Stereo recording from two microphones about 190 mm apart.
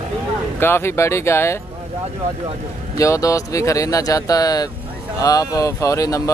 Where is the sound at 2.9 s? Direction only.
15° left (ahead or behind).